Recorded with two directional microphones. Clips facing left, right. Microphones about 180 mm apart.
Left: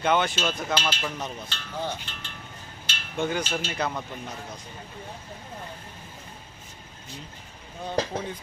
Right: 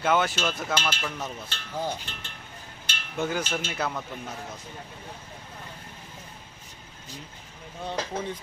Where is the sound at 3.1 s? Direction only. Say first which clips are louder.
Left 1 dB; 5° right (ahead or behind).